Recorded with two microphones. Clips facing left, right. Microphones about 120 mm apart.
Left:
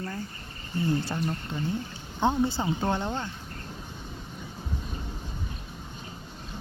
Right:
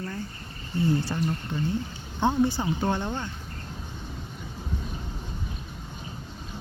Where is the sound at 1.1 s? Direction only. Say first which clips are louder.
Right 2 dB; 5° left (ahead or behind).